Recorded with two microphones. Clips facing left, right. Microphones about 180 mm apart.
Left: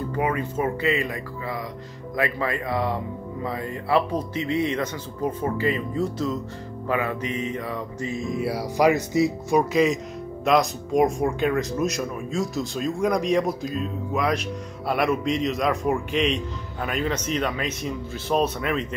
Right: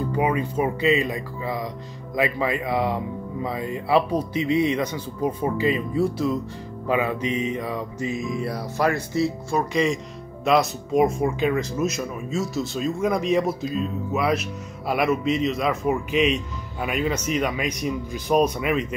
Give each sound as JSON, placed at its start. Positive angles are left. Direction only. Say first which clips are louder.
{"t": 0.1, "sound": "a man's voice", "louder": "right 1 dB", "side_deg": -15}
{"t": 8.4, "sound": "speech", "louder": "left 6 dB", "side_deg": 10}
{"t": 9.7, "sound": "a man's voice", "louder": "left 2 dB", "side_deg": 0}